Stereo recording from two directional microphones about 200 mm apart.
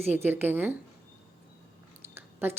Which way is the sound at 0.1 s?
10° right (ahead or behind).